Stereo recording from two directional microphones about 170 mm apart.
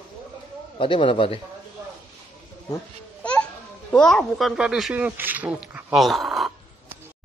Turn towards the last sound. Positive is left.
turn(degrees=0)  # may be behind; listen again after turning